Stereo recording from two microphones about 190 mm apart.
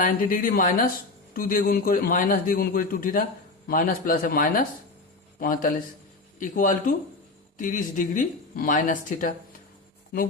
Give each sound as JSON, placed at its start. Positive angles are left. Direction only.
{"t": 0.0, "sound": "a man's voice", "side_deg": 45}